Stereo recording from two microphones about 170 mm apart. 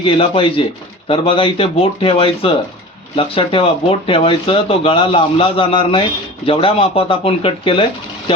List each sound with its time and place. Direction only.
0.0 s speech: 30° left (ahead or behind)